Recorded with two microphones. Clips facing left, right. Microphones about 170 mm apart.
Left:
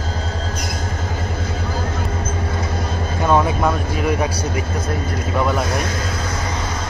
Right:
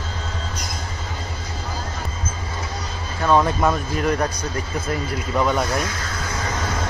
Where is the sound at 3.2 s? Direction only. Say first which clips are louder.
Left 1 dB; 10° left (ahead or behind).